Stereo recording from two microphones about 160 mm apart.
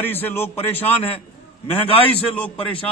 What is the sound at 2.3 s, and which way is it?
Speech, 10° left (ahead or behind).